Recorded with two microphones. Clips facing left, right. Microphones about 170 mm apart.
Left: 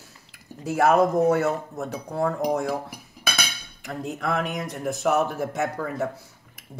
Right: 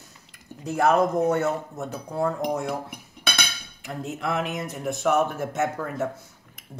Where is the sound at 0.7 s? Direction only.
5° left (ahead or behind).